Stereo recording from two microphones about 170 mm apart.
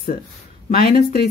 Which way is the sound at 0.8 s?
60° left (ahead or behind).